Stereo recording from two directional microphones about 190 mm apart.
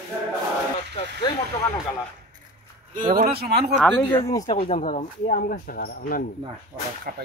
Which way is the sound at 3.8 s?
15° left (ahead or behind).